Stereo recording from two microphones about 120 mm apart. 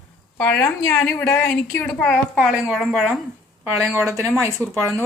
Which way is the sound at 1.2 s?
10° left (ahead or behind).